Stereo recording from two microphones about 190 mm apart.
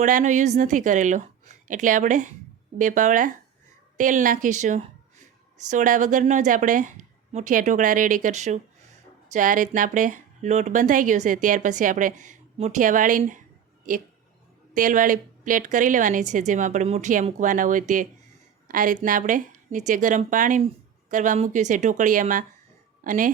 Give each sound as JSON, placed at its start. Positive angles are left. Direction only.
{"t": 0.0, "sound": "speech", "side_deg": -40}
{"t": 14.7, "sound": "speech", "side_deg": -45}